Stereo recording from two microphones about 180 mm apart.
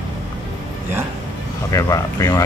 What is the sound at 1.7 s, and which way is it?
Speech, 20° left (ahead or behind).